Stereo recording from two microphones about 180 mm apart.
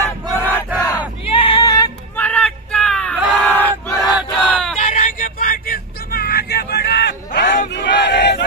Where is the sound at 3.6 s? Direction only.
10° left (ahead or behind).